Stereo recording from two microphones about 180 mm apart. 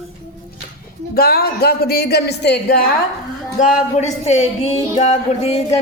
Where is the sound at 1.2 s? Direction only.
60° left (ahead or behind).